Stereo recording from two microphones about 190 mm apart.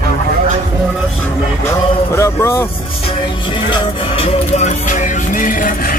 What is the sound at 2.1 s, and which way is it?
Vehicle, 15° left (ahead or behind).